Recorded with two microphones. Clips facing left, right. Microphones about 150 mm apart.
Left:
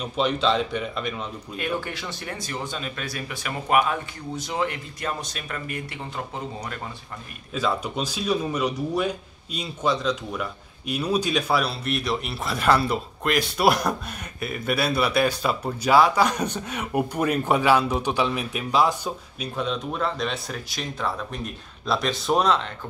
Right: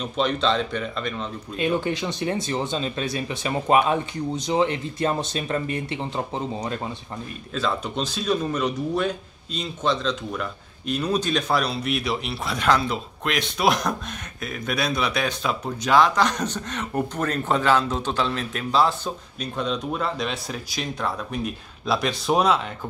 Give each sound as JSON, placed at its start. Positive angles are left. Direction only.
{"t": 0.0, "sound": "speech", "side_deg": 10}
{"t": 1.6, "sound": "speech", "side_deg": -20}
{"t": 7.5, "sound": "a man's voice", "side_deg": 10}